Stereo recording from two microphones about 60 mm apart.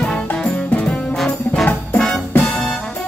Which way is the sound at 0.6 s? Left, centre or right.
Left.